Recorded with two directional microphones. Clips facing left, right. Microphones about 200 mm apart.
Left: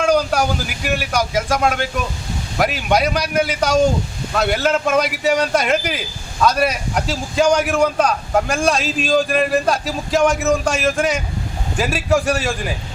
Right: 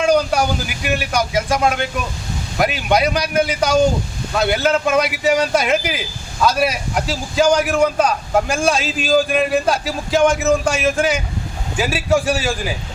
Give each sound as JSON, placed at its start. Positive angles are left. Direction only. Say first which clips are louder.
{"t": 0.0, "sound": "a man's voice", "louder": "right 1 dB", "side_deg": 0}